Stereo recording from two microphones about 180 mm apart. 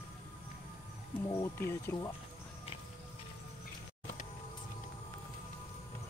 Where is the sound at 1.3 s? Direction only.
15° left (ahead or behind).